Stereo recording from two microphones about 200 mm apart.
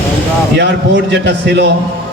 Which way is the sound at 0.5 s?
60° right (ahead or behind).